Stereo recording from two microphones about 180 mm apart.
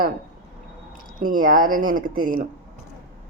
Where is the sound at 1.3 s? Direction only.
50° right (ahead or behind).